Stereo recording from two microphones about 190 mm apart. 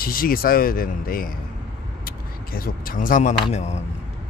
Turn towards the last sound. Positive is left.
turn(degrees=35)  # may be behind; listen again after turning